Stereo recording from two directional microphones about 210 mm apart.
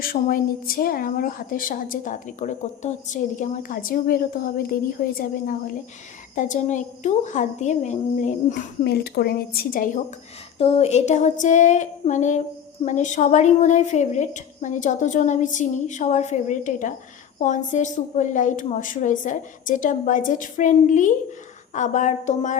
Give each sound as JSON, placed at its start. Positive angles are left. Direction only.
{"t": 0.0, "sound": "a woman's voice", "side_deg": 45}
{"t": 8.8, "sound": "a woman's voice", "side_deg": 50}
{"t": 10.6, "sound": "a woman's voice", "side_deg": 30}